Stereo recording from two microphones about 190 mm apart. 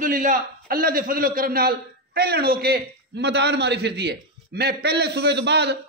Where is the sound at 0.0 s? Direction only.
45° right (ahead or behind).